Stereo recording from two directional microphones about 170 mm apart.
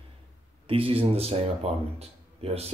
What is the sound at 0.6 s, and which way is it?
Speech, 35° right (ahead or behind).